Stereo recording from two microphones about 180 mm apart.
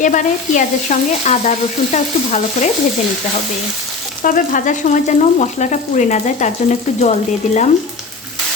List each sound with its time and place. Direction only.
0.0 s frying: 45° left (ahead or behind)
4.2 s frying: 50° left (ahead or behind)